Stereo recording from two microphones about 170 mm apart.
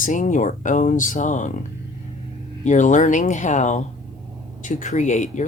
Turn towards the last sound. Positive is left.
turn(degrees=45)  # may be behind; listen again after turning